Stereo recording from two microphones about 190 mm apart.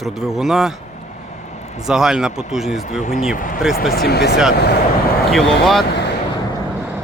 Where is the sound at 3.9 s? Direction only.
55° left (ahead or behind).